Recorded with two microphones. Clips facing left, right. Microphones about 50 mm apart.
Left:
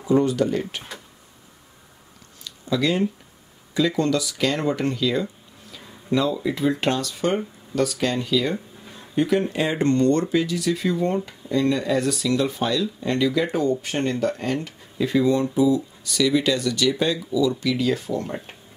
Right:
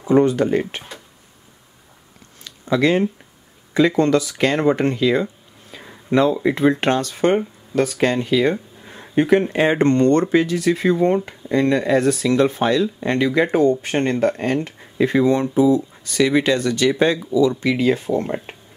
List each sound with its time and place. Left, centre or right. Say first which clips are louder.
0.0 s speech: right 4 dB; right
2.4 s a sound: right 5 dB; right
3.7 s speech: right 6 dB; right